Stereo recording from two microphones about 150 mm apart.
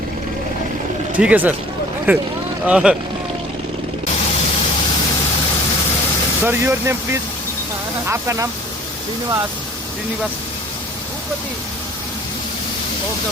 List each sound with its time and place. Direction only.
1.1 s speech: 10° right (ahead or behind)
6.4 s speech: 15° right (ahead or behind)